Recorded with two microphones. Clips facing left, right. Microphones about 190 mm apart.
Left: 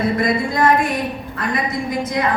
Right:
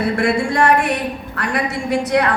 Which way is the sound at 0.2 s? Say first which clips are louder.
Right 1 dB; 75° right (ahead or behind).